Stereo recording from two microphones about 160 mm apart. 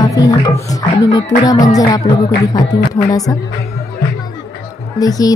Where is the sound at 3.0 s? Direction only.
20° left (ahead or behind).